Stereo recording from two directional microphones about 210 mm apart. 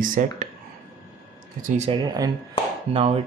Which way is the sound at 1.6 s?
30° right (ahead or behind).